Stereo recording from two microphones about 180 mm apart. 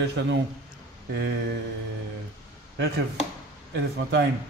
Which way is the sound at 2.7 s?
60° right (ahead or behind).